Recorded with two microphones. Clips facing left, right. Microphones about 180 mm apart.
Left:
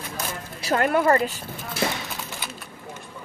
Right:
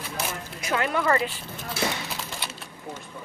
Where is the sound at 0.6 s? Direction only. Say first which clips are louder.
Left 5 dB; 45° left (ahead or behind).